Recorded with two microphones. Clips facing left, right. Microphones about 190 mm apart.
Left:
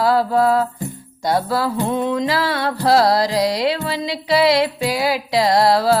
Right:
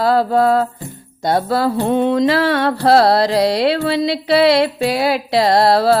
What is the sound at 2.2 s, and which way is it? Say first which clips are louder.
Carnatic music: right 5 dB; 65° right (ahead or behind).